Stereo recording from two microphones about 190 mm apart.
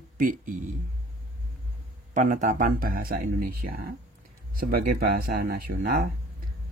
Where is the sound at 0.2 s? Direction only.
45° right (ahead or behind).